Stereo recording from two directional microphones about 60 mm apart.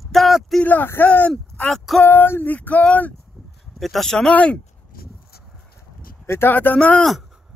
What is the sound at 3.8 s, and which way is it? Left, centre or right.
Speech, centre.